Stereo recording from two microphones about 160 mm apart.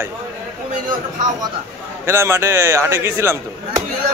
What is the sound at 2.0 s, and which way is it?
Speech, 15° right (ahead or behind).